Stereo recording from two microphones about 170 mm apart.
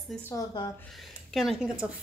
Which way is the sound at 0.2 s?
20° left (ahead or behind).